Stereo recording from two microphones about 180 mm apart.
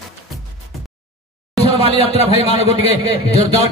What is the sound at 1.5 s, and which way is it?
A man's voice, 35° left (ahead or behind).